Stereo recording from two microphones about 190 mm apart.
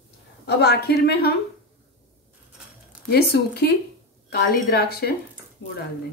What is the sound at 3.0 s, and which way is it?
A woman's voice, 55° left (ahead or behind).